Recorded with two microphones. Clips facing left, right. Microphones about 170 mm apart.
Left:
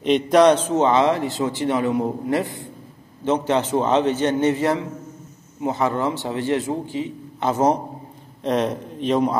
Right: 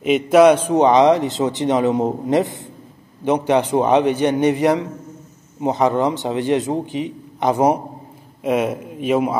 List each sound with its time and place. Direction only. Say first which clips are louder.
0.0 s a man's voice: right 3 dB; 5° right (ahead or behind)